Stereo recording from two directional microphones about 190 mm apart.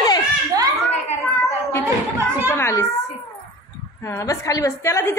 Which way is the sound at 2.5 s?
15° left (ahead or behind).